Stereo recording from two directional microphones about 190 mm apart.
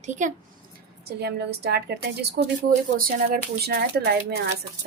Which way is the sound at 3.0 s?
50° right (ahead or behind).